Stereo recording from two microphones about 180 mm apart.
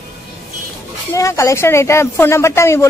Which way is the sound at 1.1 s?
15° left (ahead or behind).